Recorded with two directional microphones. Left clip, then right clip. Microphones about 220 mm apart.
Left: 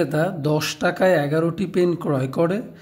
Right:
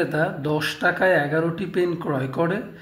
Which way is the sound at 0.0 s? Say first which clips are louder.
Left 1 dB; 40° left (ahead or behind).